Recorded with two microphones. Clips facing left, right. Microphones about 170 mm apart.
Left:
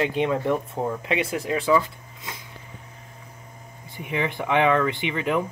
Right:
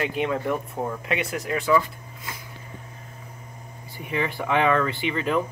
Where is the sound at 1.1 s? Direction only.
30° left (ahead or behind).